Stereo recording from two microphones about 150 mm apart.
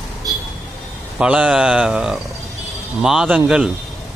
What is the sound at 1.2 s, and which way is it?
Speech, 5° right (ahead or behind).